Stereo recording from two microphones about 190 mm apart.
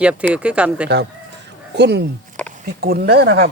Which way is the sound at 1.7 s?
60° right (ahead or behind).